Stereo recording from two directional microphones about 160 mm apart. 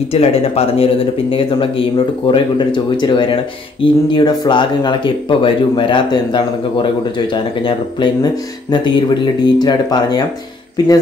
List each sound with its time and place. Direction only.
0.1 s speech: 35° left (ahead or behind)